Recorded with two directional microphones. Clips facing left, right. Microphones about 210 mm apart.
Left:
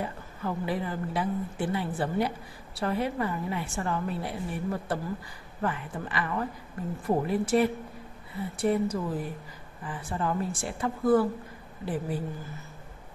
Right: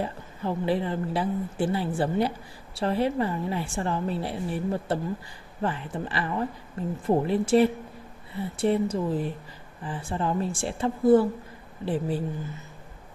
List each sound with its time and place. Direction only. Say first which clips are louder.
0.0 s a woman's voice: right 3 dB; 30° right (ahead or behind)